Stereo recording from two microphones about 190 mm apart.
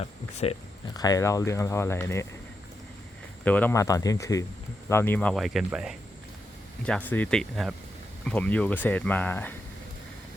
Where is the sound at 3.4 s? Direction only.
10° left (ahead or behind).